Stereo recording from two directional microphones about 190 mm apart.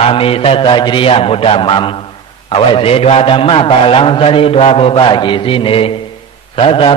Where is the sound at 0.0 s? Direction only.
30° left (ahead or behind).